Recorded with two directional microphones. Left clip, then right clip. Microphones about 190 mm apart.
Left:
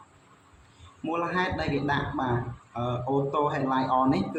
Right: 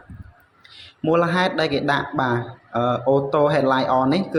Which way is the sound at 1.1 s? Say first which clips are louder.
Right 9 dB; 40° right (ahead or behind).